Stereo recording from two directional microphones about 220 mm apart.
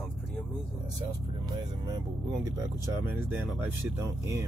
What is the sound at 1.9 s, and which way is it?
Speech, 15° right (ahead or behind).